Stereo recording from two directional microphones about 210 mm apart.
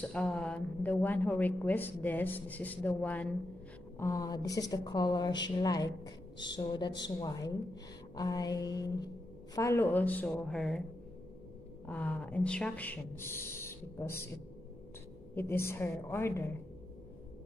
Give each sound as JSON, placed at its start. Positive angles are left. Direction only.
{"t": 0.0, "sound": "a woman's voice", "side_deg": 5}
{"t": 11.8, "sound": "a woman's voice", "side_deg": 5}
{"t": 15.3, "sound": "a woman's voice", "side_deg": 10}